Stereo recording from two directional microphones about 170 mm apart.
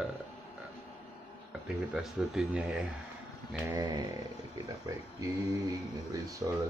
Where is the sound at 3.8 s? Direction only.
25° right (ahead or behind).